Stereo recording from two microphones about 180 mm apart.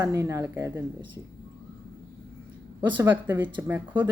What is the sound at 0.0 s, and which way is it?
Speech, 15° right (ahead or behind).